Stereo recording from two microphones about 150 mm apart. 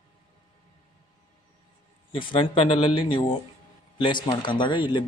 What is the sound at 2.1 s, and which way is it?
A man's voice, 35° left (ahead or behind).